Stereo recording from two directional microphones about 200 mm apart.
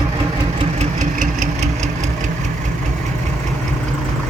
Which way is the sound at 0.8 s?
40° right (ahead or behind).